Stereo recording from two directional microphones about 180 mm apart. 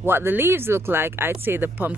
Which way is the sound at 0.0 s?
10° right (ahead or behind).